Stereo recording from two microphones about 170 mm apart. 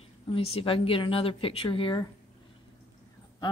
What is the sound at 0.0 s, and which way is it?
A woman's voice, 35° left (ahead or behind).